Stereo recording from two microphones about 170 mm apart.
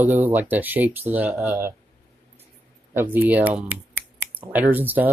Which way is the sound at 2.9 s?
10° right (ahead or behind).